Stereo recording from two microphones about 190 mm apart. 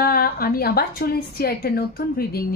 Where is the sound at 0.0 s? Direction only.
55° left (ahead or behind).